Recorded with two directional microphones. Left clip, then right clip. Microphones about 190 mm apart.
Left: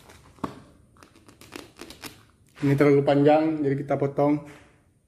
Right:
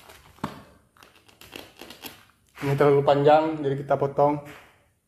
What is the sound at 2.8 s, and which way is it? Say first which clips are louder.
Speech: right 1 dB; 50° left (ahead or behind).